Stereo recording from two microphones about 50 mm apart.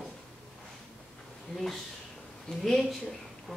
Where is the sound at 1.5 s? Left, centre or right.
Centre.